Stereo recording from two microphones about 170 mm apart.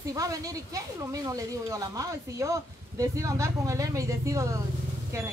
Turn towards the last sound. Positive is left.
turn(degrees=-20)  # may be behind; listen again after turning